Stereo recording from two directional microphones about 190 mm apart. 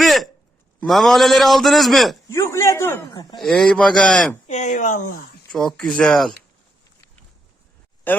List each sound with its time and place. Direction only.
0.0 s a sound: centre (ahead or behind)
0.8 s a man's voice: centre (ahead or behind)
2.3 s a man's voice: 15° left (ahead or behind)
3.3 s a man's voice: centre (ahead or behind)
4.4 s speech: 35° left (ahead or behind)
5.5 s a man's voice: centre (ahead or behind)
8.1 s a man's voice: 10° left (ahead or behind)